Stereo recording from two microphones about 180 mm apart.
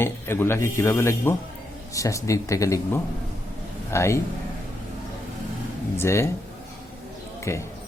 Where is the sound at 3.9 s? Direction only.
15° left (ahead or behind).